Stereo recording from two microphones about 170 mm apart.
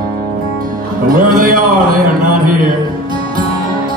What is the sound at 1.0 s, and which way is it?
A man's voice, 55° right (ahead or behind).